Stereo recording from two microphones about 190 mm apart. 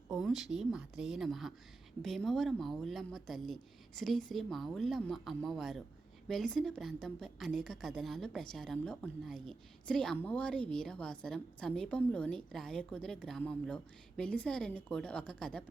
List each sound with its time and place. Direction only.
0.1 s a woman's voice: centre (ahead or behind)